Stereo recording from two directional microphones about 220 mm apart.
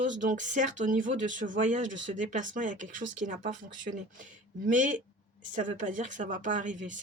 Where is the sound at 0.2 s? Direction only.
35° right (ahead or behind).